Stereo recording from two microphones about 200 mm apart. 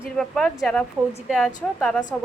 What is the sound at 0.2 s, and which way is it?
A woman's voice, 5° left (ahead or behind).